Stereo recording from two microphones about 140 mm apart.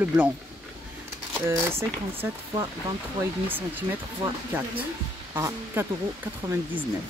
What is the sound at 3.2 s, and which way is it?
Speech, 15° right (ahead or behind).